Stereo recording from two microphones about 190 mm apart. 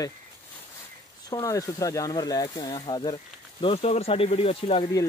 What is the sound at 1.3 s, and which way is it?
Speech, 15° left (ahead or behind).